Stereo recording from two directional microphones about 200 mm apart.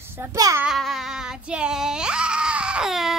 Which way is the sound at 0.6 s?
Centre (ahead or behind).